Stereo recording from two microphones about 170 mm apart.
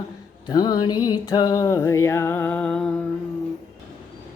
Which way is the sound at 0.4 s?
25° left (ahead or behind).